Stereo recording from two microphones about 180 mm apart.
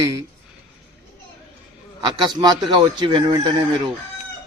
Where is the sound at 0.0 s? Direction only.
20° right (ahead or behind).